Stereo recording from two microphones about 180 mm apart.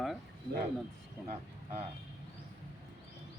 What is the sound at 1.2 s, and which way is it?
Speech, centre (ahead or behind).